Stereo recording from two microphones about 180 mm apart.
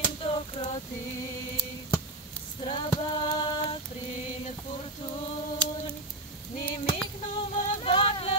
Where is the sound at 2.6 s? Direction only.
25° left (ahead or behind).